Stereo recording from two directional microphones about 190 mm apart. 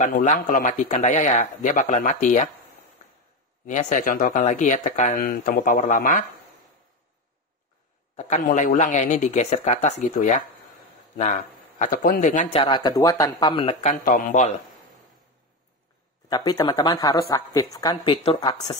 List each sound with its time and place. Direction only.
0.0 s speech: 40° left (ahead or behind)
3.6 s speech: 40° left (ahead or behind)
8.2 s speech: 40° left (ahead or behind)
12.5 s a woman's voice: 25° left (ahead or behind)
13.8 s a man's voice: 45° left (ahead or behind)
16.3 s a woman's voice: 20° left (ahead or behind)